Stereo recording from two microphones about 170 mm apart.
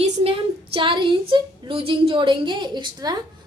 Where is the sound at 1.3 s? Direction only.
30° right (ahead or behind).